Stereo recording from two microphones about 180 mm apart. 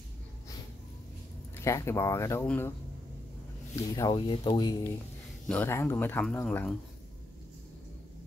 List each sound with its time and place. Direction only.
1.5 s speech: 15° left (ahead or behind)
3.7 s speech: 20° left (ahead or behind)
5.5 s speech: 10° left (ahead or behind)